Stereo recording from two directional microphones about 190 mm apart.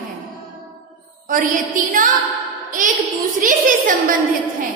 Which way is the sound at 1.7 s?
45° right (ahead or behind).